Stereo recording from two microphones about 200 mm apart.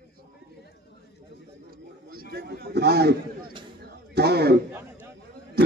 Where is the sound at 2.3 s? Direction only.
55° right (ahead or behind).